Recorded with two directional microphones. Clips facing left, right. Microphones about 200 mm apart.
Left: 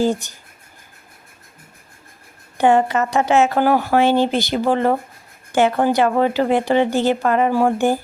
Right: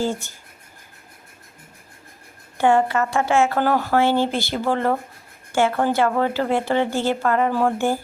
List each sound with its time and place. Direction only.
0.0 s a woman's voice: 15° left (ahead or behind)
2.6 s a woman's voice: 20° left (ahead or behind)